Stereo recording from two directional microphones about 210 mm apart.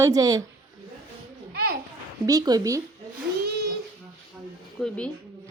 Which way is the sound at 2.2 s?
15° right (ahead or behind).